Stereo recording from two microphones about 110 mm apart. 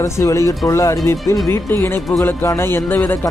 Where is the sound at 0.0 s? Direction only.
30° left (ahead or behind).